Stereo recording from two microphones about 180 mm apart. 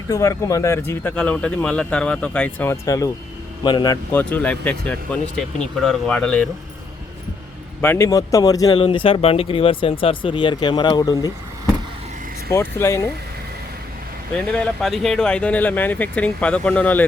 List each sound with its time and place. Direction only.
0.1 s speech: 15° left (ahead or behind)
4.1 s speech: 10° left (ahead or behind)
7.8 s speech: 15° left (ahead or behind)
12.5 s speech: 15° left (ahead or behind)
14.5 s speech: 5° left (ahead or behind)